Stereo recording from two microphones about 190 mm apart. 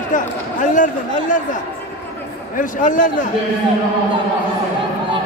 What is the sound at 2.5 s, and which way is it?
Speech, 45° left (ahead or behind).